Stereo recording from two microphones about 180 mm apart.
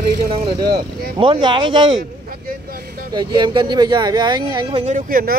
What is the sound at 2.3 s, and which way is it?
Vehicle, 55° right (ahead or behind).